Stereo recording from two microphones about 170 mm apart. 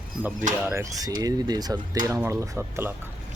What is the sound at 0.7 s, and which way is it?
Speech, 20° right (ahead or behind).